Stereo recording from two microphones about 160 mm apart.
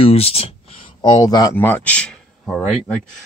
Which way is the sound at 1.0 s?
25° left (ahead or behind).